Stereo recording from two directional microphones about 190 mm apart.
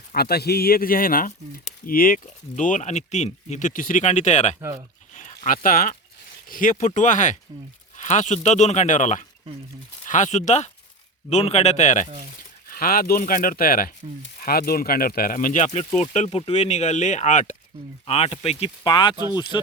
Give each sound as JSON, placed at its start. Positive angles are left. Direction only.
{"t": 0.1, "sound": "speech", "side_deg": 55}
{"t": 5.1, "sound": "a sound", "side_deg": 40}
{"t": 5.5, "sound": "speech", "side_deg": 50}
{"t": 12.6, "sound": "speech", "side_deg": 50}